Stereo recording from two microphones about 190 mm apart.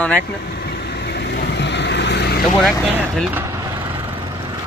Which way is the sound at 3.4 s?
15° right (ahead or behind).